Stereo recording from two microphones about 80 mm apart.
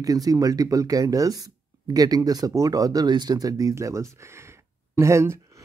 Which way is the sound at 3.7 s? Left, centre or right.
Right.